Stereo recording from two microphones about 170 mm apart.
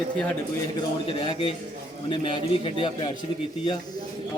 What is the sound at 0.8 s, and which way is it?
A man's voice, 30° left (ahead or behind).